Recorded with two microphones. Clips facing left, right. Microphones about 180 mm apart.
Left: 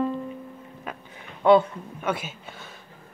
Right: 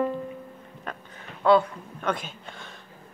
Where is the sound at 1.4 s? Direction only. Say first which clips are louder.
Left 2 dB; 20° left (ahead or behind).